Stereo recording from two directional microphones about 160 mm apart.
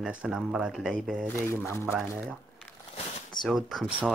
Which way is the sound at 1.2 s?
15° left (ahead or behind).